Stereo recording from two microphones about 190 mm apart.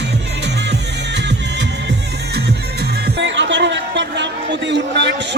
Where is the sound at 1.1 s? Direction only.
65° right (ahead or behind).